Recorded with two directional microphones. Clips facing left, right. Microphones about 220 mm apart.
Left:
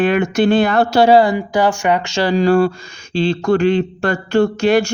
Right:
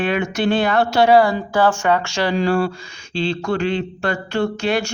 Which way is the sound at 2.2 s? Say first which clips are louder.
Left 7 dB; 40° left (ahead or behind).